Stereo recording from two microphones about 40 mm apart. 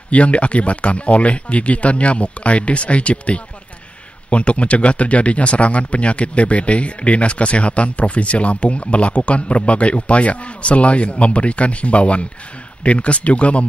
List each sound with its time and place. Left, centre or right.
0.1 s speech: left